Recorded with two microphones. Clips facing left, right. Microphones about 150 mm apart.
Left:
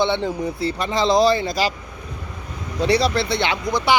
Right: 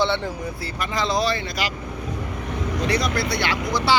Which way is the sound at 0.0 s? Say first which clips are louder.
Left 3 dB; 15° left (ahead or behind).